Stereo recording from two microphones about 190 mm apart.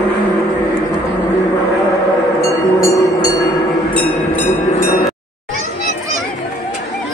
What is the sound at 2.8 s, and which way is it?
Train, 20° left (ahead or behind).